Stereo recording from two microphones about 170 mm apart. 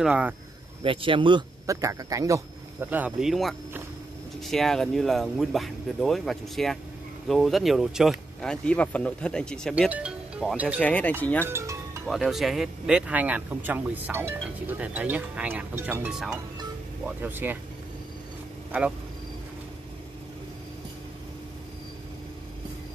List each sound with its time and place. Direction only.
0.0 s speech: 10° right (ahead or behind)
0.8 s speech: 30° right (ahead or behind); by 9.8 s 5° left (ahead or behind)
9.8 s speech: 5° right (ahead or behind)
10.8 s speech: 10° left (ahead or behind)
11.4 s music: 15° right (ahead or behind)
12.1 s speech: centre (ahead or behind)
18.7 s speech: 5° right (ahead or behind)